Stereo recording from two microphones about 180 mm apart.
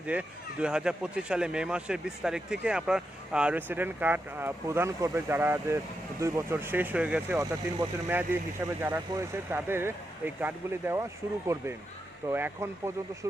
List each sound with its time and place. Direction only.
0.0 s speech: 5° right (ahead or behind)